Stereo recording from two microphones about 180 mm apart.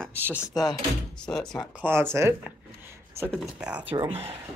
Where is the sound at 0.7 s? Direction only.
5° left (ahead or behind); by 3.3 s 15° right (ahead or behind).